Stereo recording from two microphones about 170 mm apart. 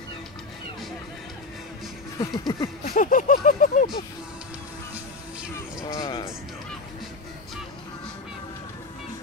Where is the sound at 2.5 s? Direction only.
25° left (ahead or behind).